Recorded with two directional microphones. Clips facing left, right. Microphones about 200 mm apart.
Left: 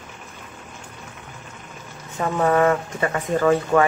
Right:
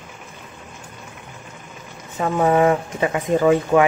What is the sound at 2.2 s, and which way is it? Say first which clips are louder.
Speech: right 2 dB; 15° right (ahead or behind).